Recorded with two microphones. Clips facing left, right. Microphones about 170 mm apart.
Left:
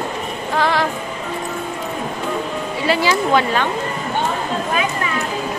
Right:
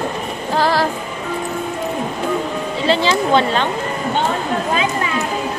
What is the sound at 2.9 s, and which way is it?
Music, 25° right (ahead or behind).